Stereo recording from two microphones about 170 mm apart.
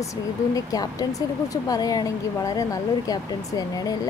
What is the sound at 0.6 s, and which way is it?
Speech, 20° left (ahead or behind).